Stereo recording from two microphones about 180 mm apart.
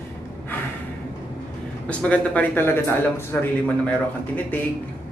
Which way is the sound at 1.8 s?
5° left (ahead or behind).